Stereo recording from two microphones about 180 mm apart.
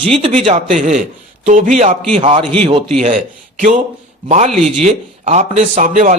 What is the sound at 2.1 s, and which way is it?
A man's voice, 30° right (ahead or behind).